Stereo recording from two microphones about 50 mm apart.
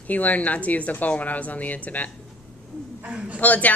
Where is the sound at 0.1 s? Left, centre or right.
Left.